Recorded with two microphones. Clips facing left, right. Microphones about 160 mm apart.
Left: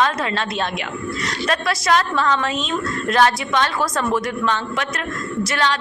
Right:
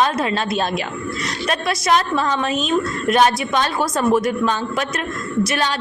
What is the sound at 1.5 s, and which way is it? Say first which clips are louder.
A woman's voice: right 1 dB; 25° right (ahead or behind).